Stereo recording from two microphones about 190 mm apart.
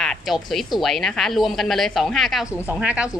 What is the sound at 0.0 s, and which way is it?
A woman's voice, centre (ahead or behind).